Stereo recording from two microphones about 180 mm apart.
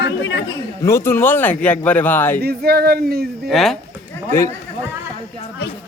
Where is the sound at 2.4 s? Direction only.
60° right (ahead or behind).